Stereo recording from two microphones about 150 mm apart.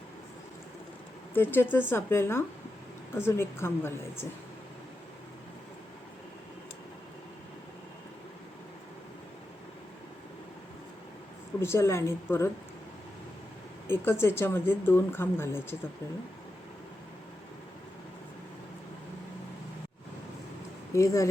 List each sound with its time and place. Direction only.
1.3 s speech: 15° left (ahead or behind)
11.6 s speech: 15° left (ahead or behind)
13.8 s speech: 15° left (ahead or behind)
20.9 s speech: 20° left (ahead or behind)